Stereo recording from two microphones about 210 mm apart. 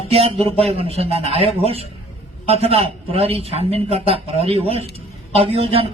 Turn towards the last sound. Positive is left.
turn(degrees=-30)  # may be behind; listen again after turning